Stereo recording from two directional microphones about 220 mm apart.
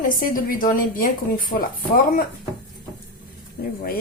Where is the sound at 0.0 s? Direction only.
40° left (ahead or behind).